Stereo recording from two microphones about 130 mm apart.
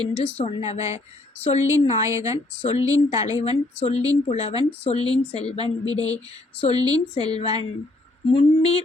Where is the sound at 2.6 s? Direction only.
60° left (ahead or behind).